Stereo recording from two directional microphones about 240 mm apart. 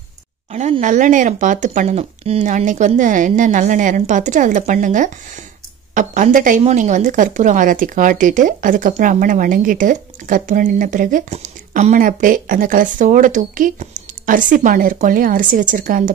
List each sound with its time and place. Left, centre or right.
0.5 s a woman's voice: right